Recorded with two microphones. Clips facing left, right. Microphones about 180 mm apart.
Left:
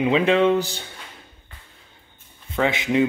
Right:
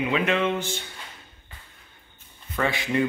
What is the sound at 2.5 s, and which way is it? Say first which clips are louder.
Speech: left 4 dB; 20° left (ahead or behind).